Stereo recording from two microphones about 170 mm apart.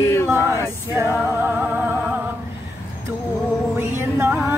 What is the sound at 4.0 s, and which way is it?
Music, 10° right (ahead or behind).